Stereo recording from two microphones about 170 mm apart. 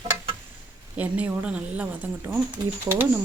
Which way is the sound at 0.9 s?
10° right (ahead or behind).